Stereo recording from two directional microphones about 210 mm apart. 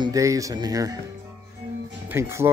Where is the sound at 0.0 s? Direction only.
15° right (ahead or behind).